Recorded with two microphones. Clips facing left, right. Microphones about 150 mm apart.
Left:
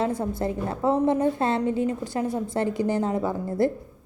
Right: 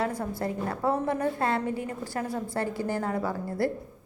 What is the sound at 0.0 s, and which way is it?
A woman's voice, 25° left (ahead or behind).